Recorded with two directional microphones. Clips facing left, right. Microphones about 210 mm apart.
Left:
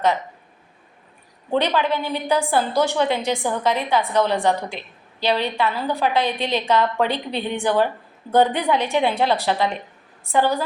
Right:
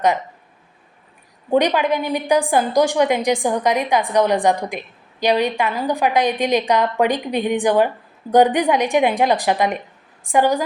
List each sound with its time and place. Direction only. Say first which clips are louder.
1.5 s a woman's voice: right 4 dB; 15° right (ahead or behind)